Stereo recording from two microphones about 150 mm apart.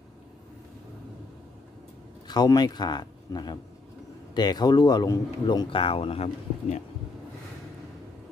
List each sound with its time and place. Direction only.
2.2 s speech: 30° left (ahead or behind); by 6.8 s 45° left (ahead or behind)